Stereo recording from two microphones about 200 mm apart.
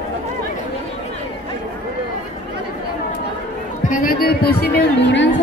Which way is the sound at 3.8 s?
45° left (ahead or behind).